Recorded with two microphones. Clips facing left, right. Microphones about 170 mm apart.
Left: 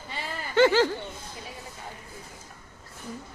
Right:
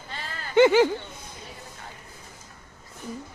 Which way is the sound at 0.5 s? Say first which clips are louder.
Right 3 dB; 15° right (ahead or behind).